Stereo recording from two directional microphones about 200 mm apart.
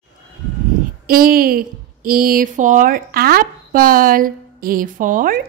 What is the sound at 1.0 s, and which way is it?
Speech, 45° right (ahead or behind).